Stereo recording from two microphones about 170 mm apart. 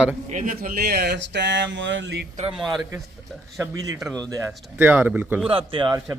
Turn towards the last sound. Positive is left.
turn(degrees=-30)  # may be behind; listen again after turning